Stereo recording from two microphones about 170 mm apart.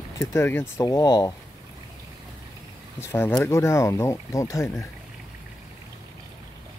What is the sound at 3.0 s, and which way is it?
Speech, 15° left (ahead or behind).